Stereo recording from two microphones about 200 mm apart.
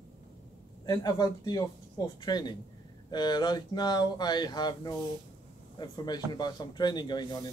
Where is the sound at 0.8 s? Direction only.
20° left (ahead or behind).